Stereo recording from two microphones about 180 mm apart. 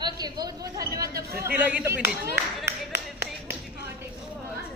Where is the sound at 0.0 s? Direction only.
20° right (ahead or behind).